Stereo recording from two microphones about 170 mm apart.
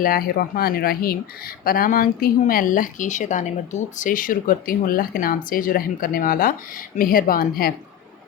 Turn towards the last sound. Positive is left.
turn(degrees=60)  # may be behind; listen again after turning